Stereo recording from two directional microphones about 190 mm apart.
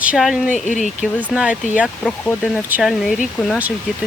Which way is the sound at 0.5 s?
40° left (ahead or behind).